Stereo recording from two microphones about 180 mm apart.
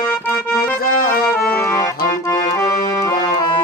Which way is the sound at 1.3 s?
10° left (ahead or behind).